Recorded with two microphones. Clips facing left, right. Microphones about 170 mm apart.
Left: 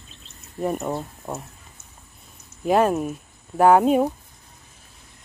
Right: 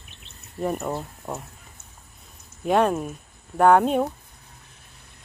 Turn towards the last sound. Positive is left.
turn(degrees=5)  # may be behind; listen again after turning